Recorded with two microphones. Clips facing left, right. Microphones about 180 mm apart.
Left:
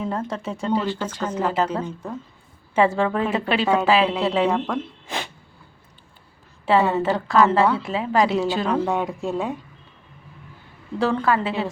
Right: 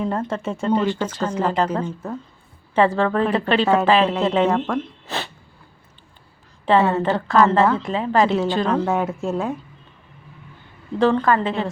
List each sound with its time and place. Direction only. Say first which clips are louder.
0.0 s a woman's voice: right 3 dB; centre (ahead or behind)
5.0 s sneeze: right 2 dB; 15° left (ahead or behind)
6.7 s a woman's voice: right 2 dB; centre (ahead or behind)
10.9 s a woman's voice: right 3 dB; 5° left (ahead or behind)